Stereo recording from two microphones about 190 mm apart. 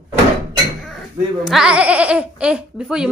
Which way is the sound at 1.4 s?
5° right (ahead or behind).